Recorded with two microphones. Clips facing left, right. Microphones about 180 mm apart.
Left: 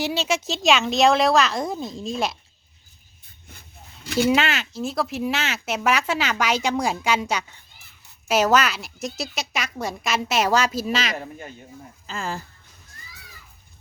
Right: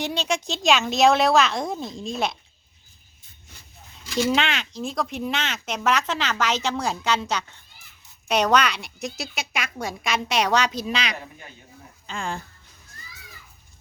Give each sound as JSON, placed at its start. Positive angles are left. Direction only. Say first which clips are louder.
{"t": 0.0, "sound": "a woman's voice", "louder": "left 2 dB", "side_deg": 5}
{"t": 4.0, "sound": "speech", "louder": "left 3 dB", "side_deg": 60}
{"t": 4.4, "sound": "a woman's voice", "louder": "left 2 dB", "side_deg": 5}